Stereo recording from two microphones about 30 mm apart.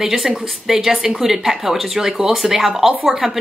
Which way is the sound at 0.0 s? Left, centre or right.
Centre.